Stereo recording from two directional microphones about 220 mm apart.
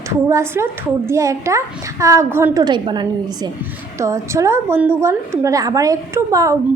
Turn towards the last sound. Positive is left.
turn(degrees=-15)  # may be behind; listen again after turning